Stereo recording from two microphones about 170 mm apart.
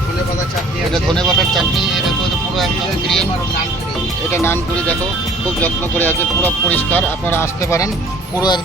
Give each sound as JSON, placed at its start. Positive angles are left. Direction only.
{"t": 0.9, "sound": "speech", "side_deg": 0}
{"t": 4.3, "sound": "speech", "side_deg": 15}